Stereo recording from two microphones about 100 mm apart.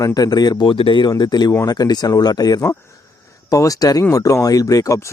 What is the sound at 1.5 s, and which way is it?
Speech, 30° left (ahead or behind).